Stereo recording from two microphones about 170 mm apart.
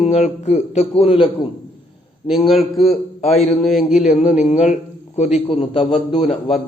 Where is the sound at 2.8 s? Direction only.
40° left (ahead or behind).